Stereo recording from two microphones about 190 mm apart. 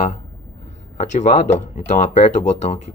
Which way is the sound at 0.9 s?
40° left (ahead or behind).